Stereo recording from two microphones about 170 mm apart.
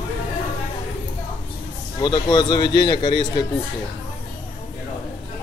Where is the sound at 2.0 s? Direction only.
25° left (ahead or behind).